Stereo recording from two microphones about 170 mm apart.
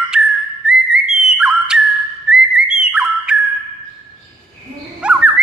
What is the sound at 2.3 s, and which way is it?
Whistling, 90° left.